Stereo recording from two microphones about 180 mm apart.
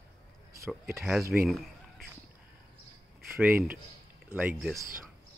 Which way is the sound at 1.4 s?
Centre (ahead or behind).